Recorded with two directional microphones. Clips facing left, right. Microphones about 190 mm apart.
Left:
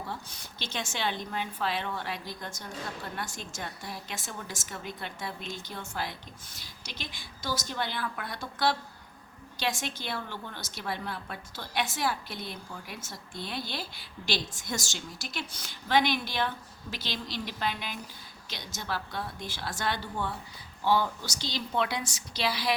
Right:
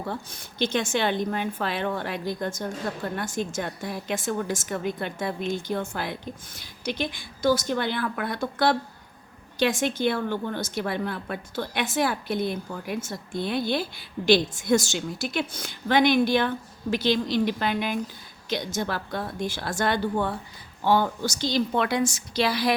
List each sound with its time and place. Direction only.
0.0 s a woman's voice: 55° right (ahead or behind)